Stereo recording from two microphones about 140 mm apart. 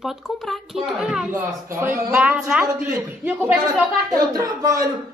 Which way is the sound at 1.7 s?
20° right (ahead or behind).